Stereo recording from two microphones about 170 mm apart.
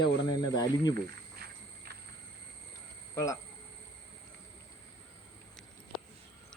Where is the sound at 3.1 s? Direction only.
20° left (ahead or behind).